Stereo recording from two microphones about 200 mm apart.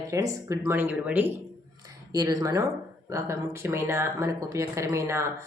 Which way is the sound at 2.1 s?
20° right (ahead or behind).